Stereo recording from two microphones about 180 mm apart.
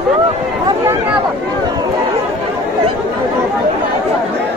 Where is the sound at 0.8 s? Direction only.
15° right (ahead or behind).